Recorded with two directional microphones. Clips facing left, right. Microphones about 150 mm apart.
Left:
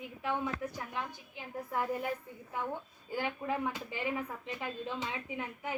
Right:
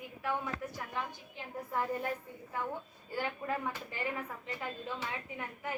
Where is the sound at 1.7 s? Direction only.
10° left (ahead or behind).